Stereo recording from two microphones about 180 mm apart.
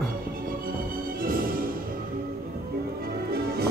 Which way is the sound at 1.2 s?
50° right (ahead or behind).